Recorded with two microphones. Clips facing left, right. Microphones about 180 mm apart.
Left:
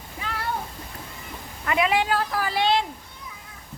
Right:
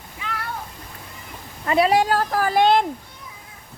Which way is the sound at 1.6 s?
35° right (ahead or behind).